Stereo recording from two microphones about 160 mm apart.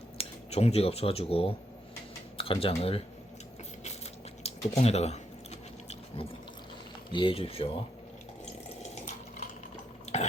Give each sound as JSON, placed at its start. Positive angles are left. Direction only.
{"t": 0.2, "sound": "speech", "side_deg": 40}
{"t": 4.4, "sound": "a sound", "side_deg": 40}
{"t": 7.1, "sound": "speech", "side_deg": 30}
{"t": 10.1, "sound": "burping", "side_deg": 45}